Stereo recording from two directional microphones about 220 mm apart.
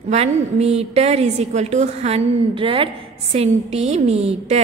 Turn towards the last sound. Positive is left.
turn(degrees=-30)  # may be behind; listen again after turning